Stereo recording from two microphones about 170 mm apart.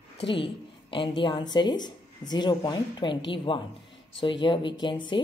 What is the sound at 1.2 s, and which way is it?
Speech, 25° left (ahead or behind).